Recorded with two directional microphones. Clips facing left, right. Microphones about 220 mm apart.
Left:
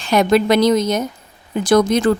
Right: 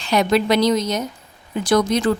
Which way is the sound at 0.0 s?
50° left (ahead or behind).